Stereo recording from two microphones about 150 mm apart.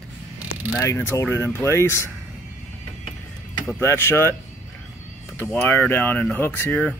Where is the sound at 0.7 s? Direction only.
15° left (ahead or behind).